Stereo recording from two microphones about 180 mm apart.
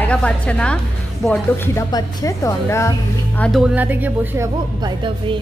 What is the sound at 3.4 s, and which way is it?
Speech, centre (ahead or behind).